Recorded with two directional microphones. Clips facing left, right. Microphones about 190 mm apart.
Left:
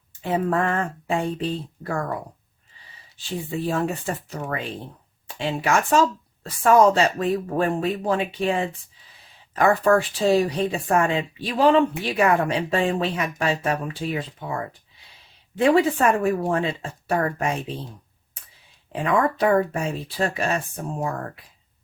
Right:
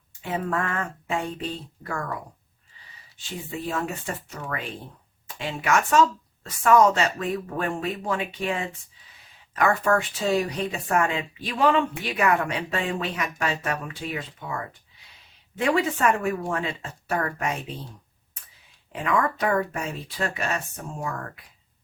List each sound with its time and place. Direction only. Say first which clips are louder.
0.2 s speech: left 5 dB; 30° left (ahead or behind)
3.7 s speech: left 4 dB; 30° left (ahead or behind)
9.6 s speech: left 4 dB; 30° left (ahead or behind)
19.0 s speech: left 4 dB; 30° left (ahead or behind)